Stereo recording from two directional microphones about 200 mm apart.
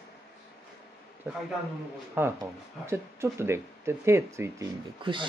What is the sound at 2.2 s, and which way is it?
Speech, 10° right (ahead or behind).